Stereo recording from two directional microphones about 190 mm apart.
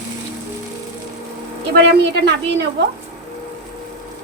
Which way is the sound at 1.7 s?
65° right (ahead or behind).